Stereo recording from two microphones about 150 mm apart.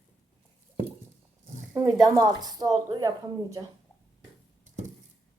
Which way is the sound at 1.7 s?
20° right (ahead or behind).